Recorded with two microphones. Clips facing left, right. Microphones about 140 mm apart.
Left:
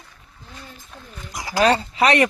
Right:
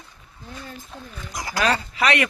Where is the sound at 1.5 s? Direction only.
30° left (ahead or behind).